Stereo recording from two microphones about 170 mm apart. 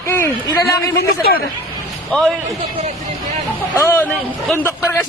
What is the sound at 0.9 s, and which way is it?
Speech, 65° left (ahead or behind).